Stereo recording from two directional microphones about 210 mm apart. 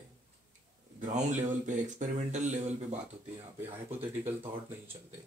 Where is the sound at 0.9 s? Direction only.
35° right (ahead or behind).